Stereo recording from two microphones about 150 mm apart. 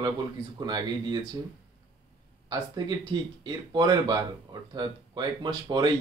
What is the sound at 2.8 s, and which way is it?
Speech, 30° right (ahead or behind).